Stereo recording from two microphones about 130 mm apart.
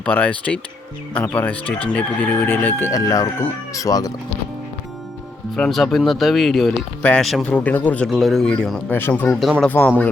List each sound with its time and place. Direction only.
0.0 s speech: 10° left (ahead or behind)
2.9 s speech: 25° left (ahead or behind)
5.5 s speech: centre (ahead or behind)
8.1 s speech: centre (ahead or behind)
8.9 s speech: 15° left (ahead or behind)
9.2 s speech: centre (ahead or behind)
9.6 s speech: 15° left (ahead or behind)